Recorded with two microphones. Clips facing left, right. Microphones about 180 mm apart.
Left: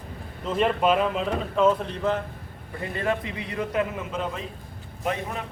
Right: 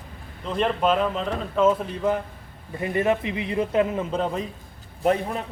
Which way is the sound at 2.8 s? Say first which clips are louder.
Right 5 dB; 20° right (ahead or behind).